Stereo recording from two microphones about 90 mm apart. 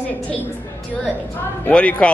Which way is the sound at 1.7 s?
15° left (ahead or behind).